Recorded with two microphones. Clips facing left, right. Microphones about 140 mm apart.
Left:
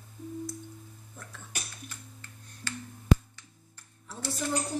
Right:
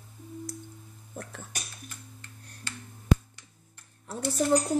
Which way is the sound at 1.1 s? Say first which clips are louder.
Right 9 dB; 60° right (ahead or behind).